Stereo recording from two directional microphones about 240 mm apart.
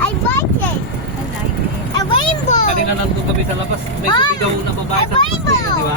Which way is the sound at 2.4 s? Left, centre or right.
Left.